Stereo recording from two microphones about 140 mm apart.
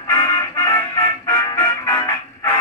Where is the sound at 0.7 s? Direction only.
20° left (ahead or behind).